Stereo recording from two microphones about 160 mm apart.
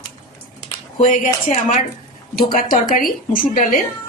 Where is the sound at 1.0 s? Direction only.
55° left (ahead or behind).